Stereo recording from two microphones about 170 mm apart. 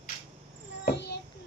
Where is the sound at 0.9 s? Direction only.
90° left.